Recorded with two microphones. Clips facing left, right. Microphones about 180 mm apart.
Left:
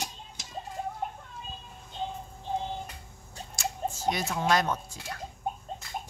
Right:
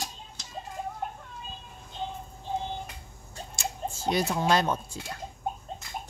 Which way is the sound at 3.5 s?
30° right (ahead or behind).